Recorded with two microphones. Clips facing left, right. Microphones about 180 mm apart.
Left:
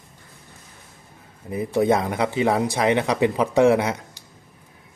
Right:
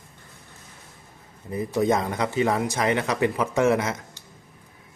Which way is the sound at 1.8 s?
15° left (ahead or behind).